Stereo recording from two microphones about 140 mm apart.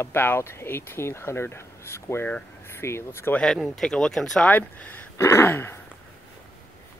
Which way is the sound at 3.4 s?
Centre (ahead or behind).